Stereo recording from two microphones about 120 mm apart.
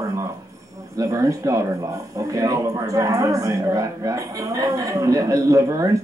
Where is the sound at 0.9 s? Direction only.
30° right (ahead or behind).